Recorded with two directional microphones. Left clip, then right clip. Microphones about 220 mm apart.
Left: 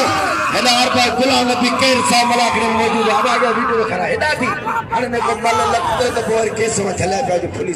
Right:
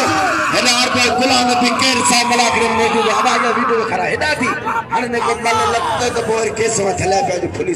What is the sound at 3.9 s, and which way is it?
Speech, 30° right (ahead or behind).